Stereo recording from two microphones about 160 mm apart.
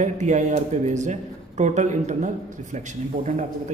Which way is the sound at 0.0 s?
50° right (ahead or behind).